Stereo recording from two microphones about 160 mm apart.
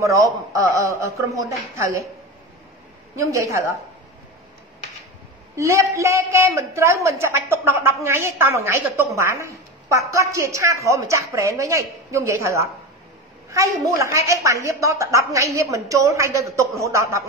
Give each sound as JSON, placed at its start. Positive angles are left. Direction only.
{"t": 0.0, "sound": "a woman's voice", "side_deg": -20}
{"t": 3.2, "sound": "a woman's voice", "side_deg": -20}
{"t": 5.6, "sound": "a man's voice", "side_deg": -20}